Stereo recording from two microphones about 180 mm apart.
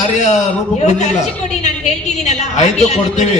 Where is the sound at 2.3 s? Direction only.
40° left (ahead or behind).